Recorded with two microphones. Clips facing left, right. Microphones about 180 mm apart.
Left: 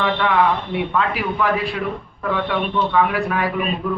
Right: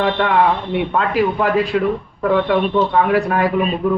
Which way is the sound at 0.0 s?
45° right (ahead or behind).